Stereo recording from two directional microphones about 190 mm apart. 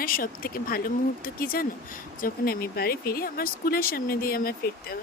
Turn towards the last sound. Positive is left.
turn(degrees=50)  # may be behind; listen again after turning